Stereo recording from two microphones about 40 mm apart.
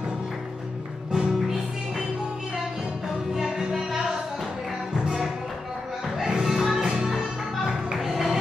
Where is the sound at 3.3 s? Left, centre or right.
Centre.